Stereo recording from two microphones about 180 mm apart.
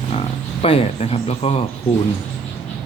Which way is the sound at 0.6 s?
35° left (ahead or behind).